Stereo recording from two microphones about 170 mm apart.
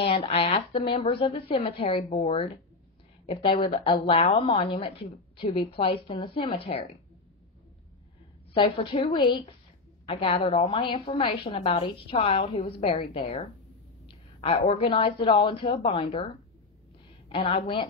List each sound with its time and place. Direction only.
0.0 s a woman's voice: 35° left (ahead or behind)
8.5 s a woman's voice: 30° left (ahead or behind)
17.3 s a woman's voice: 30° left (ahead or behind)